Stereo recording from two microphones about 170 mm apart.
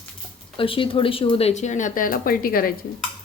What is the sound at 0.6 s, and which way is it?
Speech, 30° left (ahead or behind).